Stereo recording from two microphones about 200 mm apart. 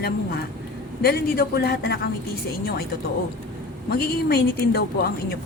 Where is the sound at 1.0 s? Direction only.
50° left (ahead or behind).